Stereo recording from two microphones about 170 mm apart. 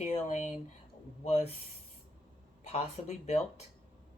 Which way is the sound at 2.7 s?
40° left (ahead or behind).